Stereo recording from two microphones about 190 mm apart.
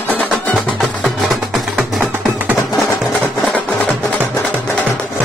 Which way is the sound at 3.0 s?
5° left (ahead or behind).